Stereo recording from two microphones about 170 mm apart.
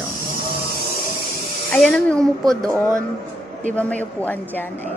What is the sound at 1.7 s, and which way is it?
Speech, 5° left (ahead or behind).